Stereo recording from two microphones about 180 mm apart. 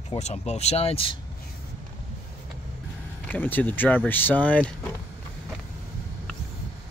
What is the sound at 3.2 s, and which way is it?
Speech, 10° left (ahead or behind).